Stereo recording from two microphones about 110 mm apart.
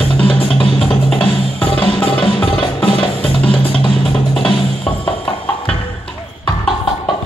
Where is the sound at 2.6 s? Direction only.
50° left (ahead or behind).